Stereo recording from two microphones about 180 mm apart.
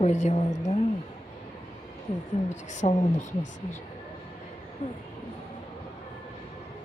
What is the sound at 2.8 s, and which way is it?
Speech, 35° left (ahead or behind).